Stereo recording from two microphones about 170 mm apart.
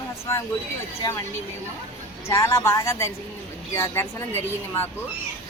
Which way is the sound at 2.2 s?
15° left (ahead or behind).